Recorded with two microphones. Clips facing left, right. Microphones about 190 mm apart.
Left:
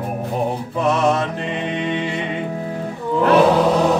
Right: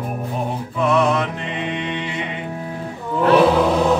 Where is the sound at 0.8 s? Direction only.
40° left (ahead or behind).